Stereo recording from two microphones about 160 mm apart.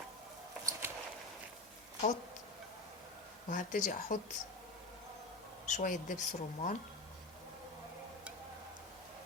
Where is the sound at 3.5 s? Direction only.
50° left (ahead or behind).